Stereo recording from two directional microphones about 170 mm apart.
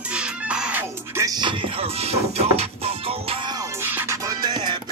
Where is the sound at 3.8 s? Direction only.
10° right (ahead or behind).